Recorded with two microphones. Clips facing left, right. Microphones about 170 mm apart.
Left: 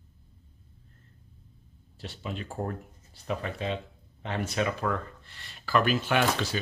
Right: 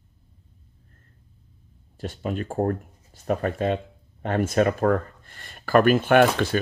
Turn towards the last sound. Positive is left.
turn(degrees=-55)  # may be behind; listen again after turning